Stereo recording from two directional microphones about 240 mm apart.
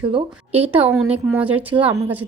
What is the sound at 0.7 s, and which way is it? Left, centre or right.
Speech, centre.